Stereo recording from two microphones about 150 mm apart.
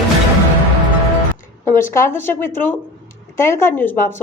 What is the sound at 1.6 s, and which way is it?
A woman's voice, 15° left (ahead or behind).